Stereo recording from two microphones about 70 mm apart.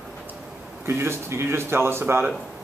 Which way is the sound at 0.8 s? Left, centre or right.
Right.